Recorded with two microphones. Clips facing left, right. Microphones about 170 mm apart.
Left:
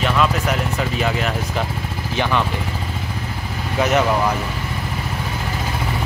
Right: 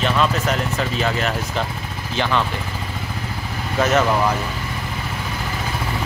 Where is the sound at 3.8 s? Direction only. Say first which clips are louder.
Even; 15° left (ahead or behind).